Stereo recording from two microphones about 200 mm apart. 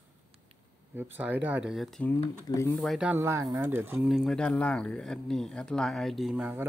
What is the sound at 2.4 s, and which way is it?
Speech, 15° left (ahead or behind).